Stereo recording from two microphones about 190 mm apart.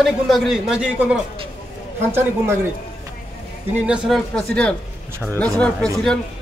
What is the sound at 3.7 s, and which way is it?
A man's voice, 5° right (ahead or behind).